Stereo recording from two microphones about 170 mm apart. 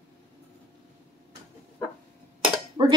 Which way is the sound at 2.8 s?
25° right (ahead or behind).